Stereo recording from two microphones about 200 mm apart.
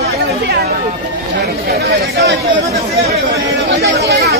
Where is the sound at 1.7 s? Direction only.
50° right (ahead or behind).